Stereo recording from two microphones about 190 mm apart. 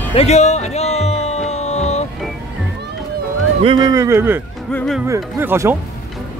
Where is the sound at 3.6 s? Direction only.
25° right (ahead or behind).